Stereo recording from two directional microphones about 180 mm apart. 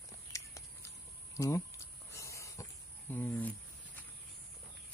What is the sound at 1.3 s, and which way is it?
Speech, 15° left (ahead or behind).